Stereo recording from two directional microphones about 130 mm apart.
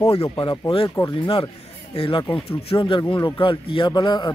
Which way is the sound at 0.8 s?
25° left (ahead or behind).